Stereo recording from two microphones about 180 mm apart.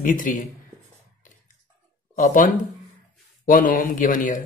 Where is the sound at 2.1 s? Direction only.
50° left (ahead or behind).